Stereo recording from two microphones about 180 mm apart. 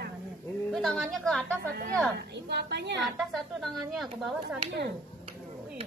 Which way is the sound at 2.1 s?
70° right (ahead or behind).